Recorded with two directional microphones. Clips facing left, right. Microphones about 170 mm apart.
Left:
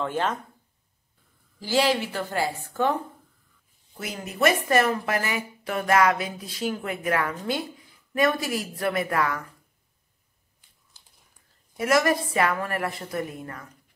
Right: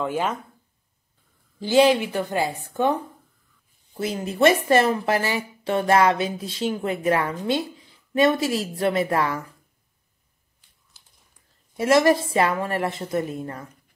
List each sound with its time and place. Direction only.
0.0 s a woman's voice: 10° right (ahead or behind)
1.6 s a woman's voice: 20° right (ahead or behind)
3.9 s speech: 30° right (ahead or behind)
11.7 s speech: 25° right (ahead or behind)